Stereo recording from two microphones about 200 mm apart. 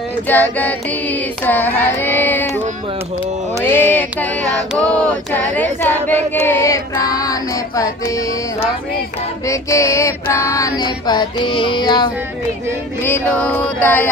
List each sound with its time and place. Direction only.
0.3 s child singing: 10° left (ahead or behind)
3.7 s child singing: 10° left (ahead or behind)
9.5 s child singing: 15° left (ahead or behind)
10.8 s music: 20° left (ahead or behind)
13.0 s child singing: 10° left (ahead or behind)